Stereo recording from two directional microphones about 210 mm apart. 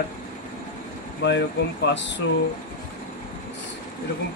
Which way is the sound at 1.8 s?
55° left (ahead or behind).